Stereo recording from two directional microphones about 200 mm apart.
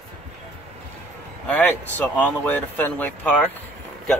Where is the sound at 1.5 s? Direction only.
10° left (ahead or behind).